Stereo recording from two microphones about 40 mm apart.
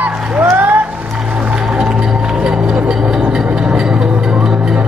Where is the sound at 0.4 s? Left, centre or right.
Right.